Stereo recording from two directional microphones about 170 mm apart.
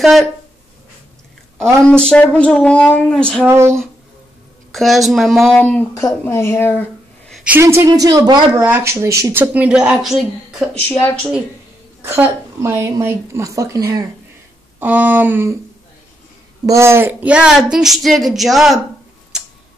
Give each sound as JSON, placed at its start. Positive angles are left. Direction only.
{"t": 0.0, "sound": "speech", "side_deg": 0}
{"t": 1.6, "sound": "speech", "side_deg": 5}
{"t": 3.4, "sound": "speech", "side_deg": -15}
{"t": 4.7, "sound": "a woman's voice", "side_deg": 0}
{"t": 7.3, "sound": "a sound", "side_deg": -10}
{"t": 7.6, "sound": "speech", "side_deg": -15}
{"t": 8.6, "sound": "speech", "side_deg": -15}
{"t": 12.0, "sound": "speech", "side_deg": -15}
{"t": 16.6, "sound": "speech", "side_deg": -15}